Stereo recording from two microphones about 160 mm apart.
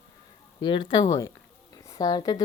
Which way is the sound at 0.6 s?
30° left (ahead or behind).